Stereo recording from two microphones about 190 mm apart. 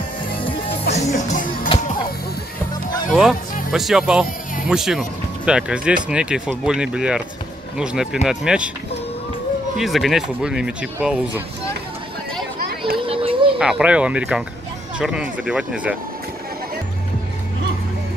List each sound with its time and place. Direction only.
1.1 s music: 40° left (ahead or behind)
3.1 s speech: centre (ahead or behind)
9.8 s speech: centre (ahead or behind)
12.5 s a sound: 50° right (ahead or behind)
12.9 s a sound: 30° right (ahead or behind)
13.6 s speech: 5° right (ahead or behind)